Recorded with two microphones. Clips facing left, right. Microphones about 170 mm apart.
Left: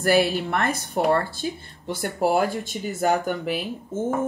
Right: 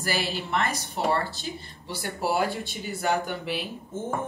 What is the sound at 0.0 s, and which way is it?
Speech, 55° left (ahead or behind).